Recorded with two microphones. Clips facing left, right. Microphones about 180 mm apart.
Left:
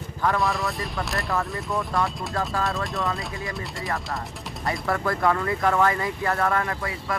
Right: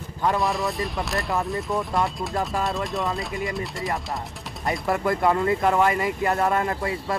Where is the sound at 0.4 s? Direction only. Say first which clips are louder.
Right 1 dB; centre (ahead or behind).